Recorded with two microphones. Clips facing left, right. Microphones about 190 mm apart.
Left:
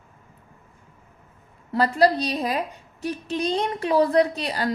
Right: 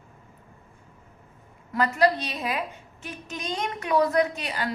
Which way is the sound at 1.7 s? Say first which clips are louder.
Left 3 dB; 35° left (ahead or behind).